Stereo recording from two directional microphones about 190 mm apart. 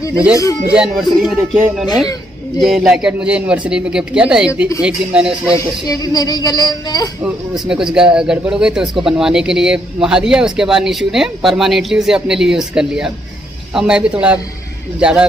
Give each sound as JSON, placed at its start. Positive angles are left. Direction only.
{"t": 0.3, "sound": "speech", "side_deg": 15}
{"t": 0.7, "sound": "speech", "side_deg": -5}
{"t": 5.9, "sound": "speech", "side_deg": 20}
{"t": 7.2, "sound": "speech", "side_deg": -5}